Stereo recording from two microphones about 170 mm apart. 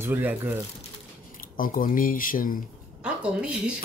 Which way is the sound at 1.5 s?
55° left (ahead or behind).